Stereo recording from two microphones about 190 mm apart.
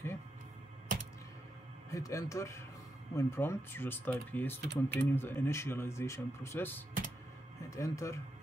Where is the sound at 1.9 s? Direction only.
15° left (ahead or behind).